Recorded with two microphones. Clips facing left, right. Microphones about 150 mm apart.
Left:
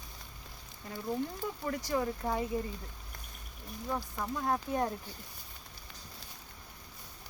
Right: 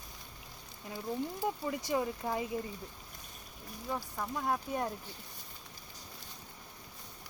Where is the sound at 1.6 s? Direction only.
15° right (ahead or behind).